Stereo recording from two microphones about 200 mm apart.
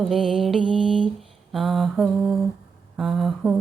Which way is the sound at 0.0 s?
Centre (ahead or behind).